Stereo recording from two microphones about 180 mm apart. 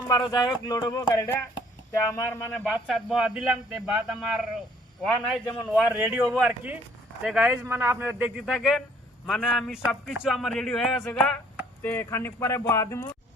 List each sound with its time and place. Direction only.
0.1 s speech: 20° left (ahead or behind)
2.6 s a man's voice: 5° right (ahead or behind); by 13.1 s 15° left (ahead or behind)